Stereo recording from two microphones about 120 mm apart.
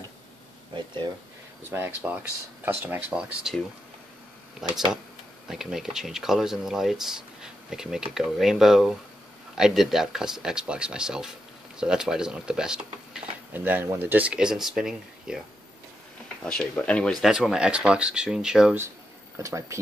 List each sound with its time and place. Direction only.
1.7 s speech: 20° right (ahead or behind)
4.6 s speech: 5° right (ahead or behind)
13.5 s speech: 15° right (ahead or behind)
16.4 s speech: 10° left (ahead or behind)
19.3 s speech: 25° right (ahead or behind)